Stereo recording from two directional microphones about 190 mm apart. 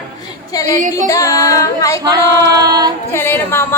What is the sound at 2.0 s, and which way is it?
Female singing, 20° right (ahead or behind).